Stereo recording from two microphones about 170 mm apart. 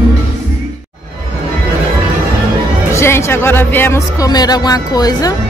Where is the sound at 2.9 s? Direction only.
15° left (ahead or behind).